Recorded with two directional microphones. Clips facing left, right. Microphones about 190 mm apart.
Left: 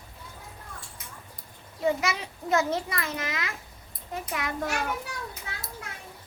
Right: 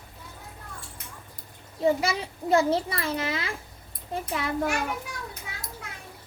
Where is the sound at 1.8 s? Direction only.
30° right (ahead or behind).